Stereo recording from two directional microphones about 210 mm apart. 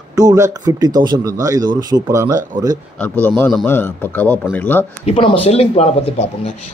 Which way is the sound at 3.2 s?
10° left (ahead or behind).